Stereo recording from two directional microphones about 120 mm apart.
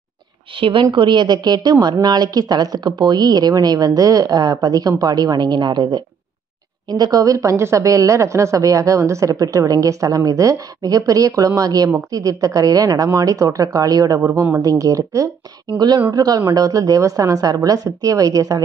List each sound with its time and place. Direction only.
0.6 s a woman's voice: 45° right (ahead or behind); by 18.6 s 30° right (ahead or behind)